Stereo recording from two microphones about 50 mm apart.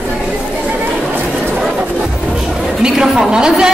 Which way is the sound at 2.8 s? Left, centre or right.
Centre.